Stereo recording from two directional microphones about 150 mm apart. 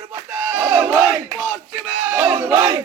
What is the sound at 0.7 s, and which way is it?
Battle cry, 10° right (ahead or behind).